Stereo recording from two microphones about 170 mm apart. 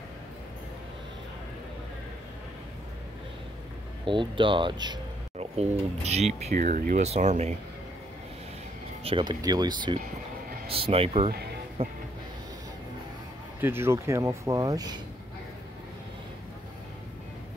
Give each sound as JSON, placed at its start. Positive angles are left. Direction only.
{"t": 4.0, "sound": "speech", "side_deg": -30}
{"t": 5.4, "sound": "speech", "side_deg": -40}
{"t": 9.0, "sound": "speech", "side_deg": -30}
{"t": 13.6, "sound": "speech", "side_deg": -15}